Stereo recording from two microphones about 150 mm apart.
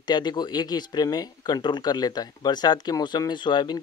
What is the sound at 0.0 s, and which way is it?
Speech, 30° left (ahead or behind).